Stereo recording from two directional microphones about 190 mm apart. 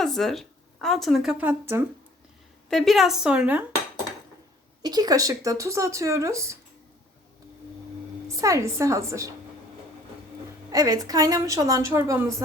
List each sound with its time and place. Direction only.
0.0 s speech: centre (ahead or behind)
2.6 s a woman's voice: centre (ahead or behind)
4.8 s speech: 20° right (ahead or behind)
8.4 s speech: 15° right (ahead or behind)
10.7 s speech: 20° right (ahead or behind)